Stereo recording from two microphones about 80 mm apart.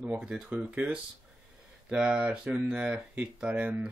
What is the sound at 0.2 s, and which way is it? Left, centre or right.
Speech, centre.